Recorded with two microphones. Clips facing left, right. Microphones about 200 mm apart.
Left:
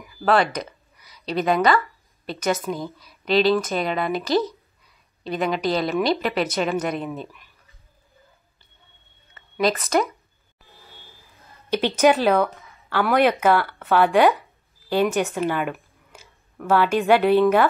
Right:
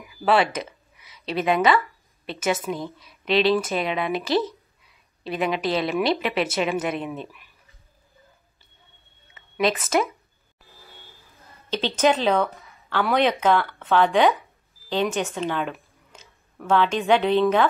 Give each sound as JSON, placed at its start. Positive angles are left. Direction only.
{"t": 0.2, "sound": "a woman's voice", "side_deg": 0}
{"t": 9.3, "sound": "speech", "side_deg": 0}
{"t": 10.6, "sound": "a sound", "side_deg": 0}
{"t": 11.7, "sound": "speech", "side_deg": 10}